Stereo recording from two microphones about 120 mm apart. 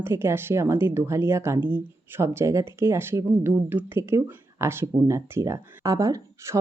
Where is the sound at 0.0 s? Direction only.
20° right (ahead or behind).